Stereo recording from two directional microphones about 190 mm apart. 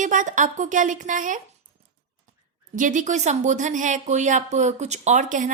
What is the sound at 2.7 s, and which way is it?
Speech, 40° right (ahead or behind).